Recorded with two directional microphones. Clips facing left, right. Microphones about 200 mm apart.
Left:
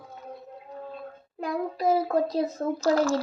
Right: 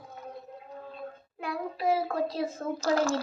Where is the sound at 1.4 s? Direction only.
40° left (ahead or behind).